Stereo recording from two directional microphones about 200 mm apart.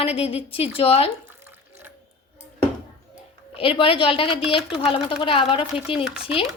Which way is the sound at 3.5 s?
25° left (ahead or behind).